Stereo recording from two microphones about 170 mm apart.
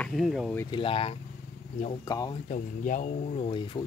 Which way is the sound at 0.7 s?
30° left (ahead or behind).